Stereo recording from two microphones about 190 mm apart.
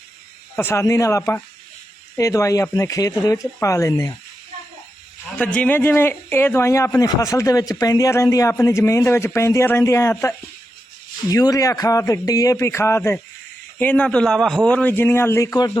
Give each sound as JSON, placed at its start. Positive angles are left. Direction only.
{"t": 0.5, "sound": "speech", "side_deg": 15}
{"t": 5.5, "sound": "speech", "side_deg": 10}